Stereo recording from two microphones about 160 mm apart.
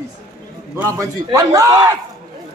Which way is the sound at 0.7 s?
20° right (ahead or behind).